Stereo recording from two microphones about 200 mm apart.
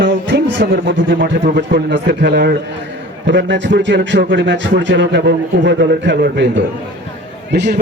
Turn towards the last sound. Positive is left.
turn(degrees=-55)  # may be behind; listen again after turning